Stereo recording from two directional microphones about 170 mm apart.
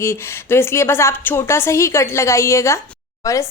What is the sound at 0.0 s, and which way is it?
A woman's voice, 15° left (ahead or behind).